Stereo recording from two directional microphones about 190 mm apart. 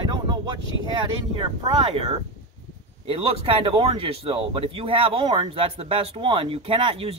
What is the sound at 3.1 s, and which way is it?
Speech, 30° right (ahead or behind).